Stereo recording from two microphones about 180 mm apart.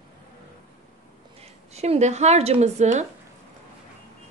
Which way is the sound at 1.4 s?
35° right (ahead or behind).